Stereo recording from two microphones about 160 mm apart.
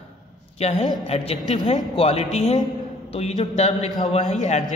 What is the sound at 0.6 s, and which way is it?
A woman's voice, 40° left (ahead or behind).